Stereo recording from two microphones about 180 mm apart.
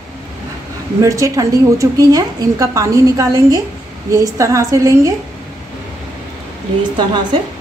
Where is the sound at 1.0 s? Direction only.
15° right (ahead or behind).